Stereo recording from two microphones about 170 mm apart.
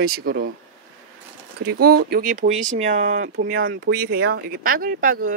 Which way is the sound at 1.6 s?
70° right (ahead or behind).